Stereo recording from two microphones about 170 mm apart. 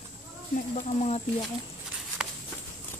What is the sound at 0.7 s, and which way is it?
Speech, 40° left (ahead or behind).